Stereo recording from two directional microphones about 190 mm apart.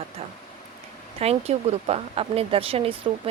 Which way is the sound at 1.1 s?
35° right (ahead or behind).